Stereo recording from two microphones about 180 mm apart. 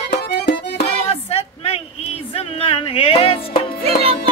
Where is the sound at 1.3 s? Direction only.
35° left (ahead or behind).